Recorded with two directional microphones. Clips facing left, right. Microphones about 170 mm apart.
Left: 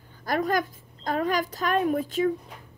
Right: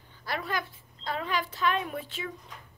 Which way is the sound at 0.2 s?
45° left (ahead or behind).